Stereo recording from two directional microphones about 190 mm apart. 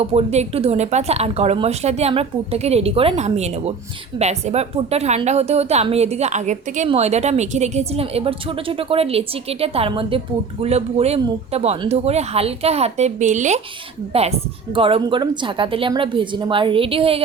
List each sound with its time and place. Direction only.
0.0 s a woman's voice: 30° right (ahead or behind)